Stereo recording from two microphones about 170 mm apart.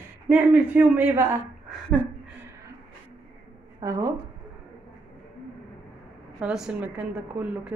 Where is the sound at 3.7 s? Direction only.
20° right (ahead or behind).